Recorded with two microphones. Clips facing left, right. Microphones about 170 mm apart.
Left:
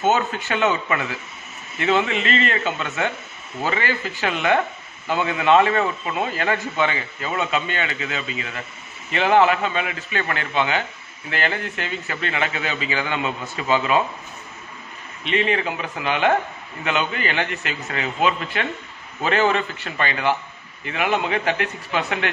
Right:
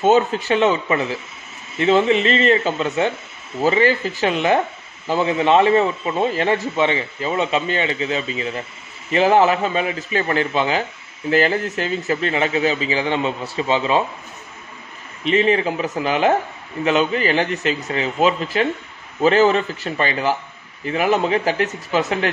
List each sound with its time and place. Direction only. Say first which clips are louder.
0.0 s a man's voice: right 5 dB; 35° right (ahead or behind)
15.2 s a man's voice: right 5 dB; 35° right (ahead or behind)